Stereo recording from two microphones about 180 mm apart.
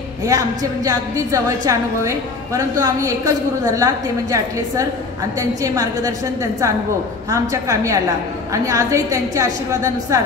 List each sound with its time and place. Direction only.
0.2 s a woman's voice: 20° right (ahead or behind)
7.2 s a woman's voice: 20° right (ahead or behind)